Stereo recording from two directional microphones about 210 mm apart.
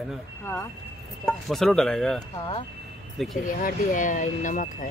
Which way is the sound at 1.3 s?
Centre (ahead or behind).